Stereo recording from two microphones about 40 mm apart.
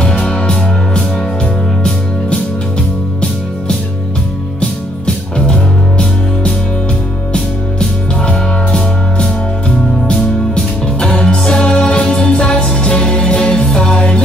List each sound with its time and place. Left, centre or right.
0.2 s music: left
4.6 s music: left
8.3 s music: left